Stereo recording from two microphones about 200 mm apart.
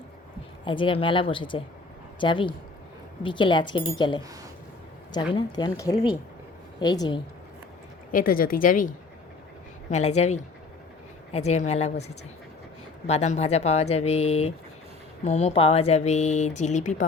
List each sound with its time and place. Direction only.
0.6 s speech: 25° left (ahead or behind)
5.3 s speech: 20° left (ahead or behind)
8.1 s speech: 45° left (ahead or behind)